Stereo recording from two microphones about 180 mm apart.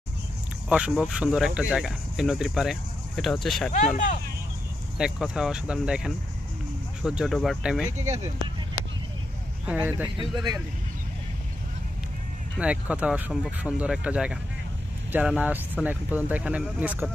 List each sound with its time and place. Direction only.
0.7 s speech: 5° right (ahead or behind)
3.7 s speech: 45° left (ahead or behind)
4.9 s speech: 5° right (ahead or behind)
8.0 s speech: 20° right (ahead or behind)
9.8 s speech: 10° right (ahead or behind)
12.5 s speech: 5° right (ahead or behind)